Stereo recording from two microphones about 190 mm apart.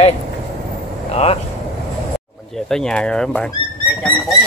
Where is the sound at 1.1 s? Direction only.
35° left (ahead or behind).